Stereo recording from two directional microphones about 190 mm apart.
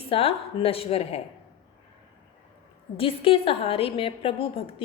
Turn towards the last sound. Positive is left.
turn(degrees=30)  # may be behind; listen again after turning